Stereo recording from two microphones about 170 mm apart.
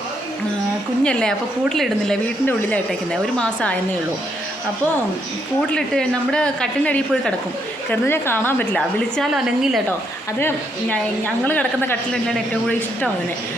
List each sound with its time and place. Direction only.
1.0 s a woman's voice: 5° left (ahead or behind)
5.6 s a woman's voice: 5° left (ahead or behind)
10.4 s speech: 10° left (ahead or behind)